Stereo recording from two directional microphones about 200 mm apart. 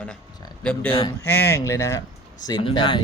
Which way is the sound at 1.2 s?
10° left (ahead or behind).